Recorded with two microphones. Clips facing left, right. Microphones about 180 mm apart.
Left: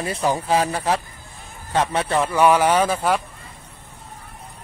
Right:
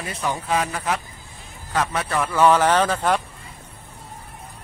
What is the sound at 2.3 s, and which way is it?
Speech, 10° left (ahead or behind).